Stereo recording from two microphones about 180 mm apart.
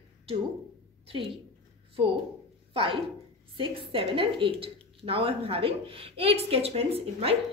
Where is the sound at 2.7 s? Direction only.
30° right (ahead or behind).